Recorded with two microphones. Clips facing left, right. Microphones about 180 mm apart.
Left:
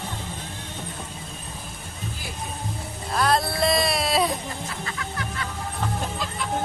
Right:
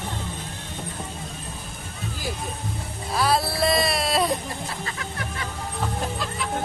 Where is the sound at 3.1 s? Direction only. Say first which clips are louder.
Even; 5° right (ahead or behind).